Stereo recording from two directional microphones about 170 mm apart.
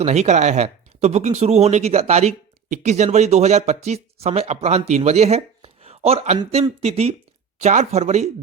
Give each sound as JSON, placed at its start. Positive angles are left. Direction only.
{"t": 0.0, "sound": "speech", "side_deg": -40}